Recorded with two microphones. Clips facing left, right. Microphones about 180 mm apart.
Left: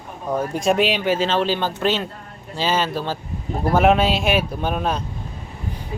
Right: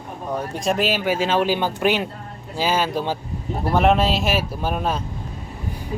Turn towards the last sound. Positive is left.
turn(degrees=0)  # may be behind; listen again after turning